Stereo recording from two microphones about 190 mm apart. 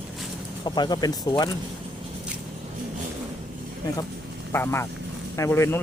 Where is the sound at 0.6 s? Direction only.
20° left (ahead or behind).